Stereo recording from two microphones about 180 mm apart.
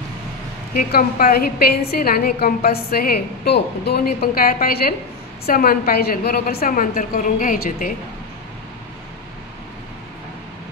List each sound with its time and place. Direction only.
0.7 s a woman's voice: 55° left (ahead or behind)